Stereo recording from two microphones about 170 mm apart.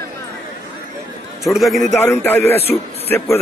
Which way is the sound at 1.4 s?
Centre (ahead or behind).